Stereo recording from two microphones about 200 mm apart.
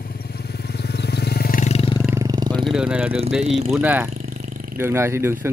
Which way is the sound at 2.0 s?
15° right (ahead or behind).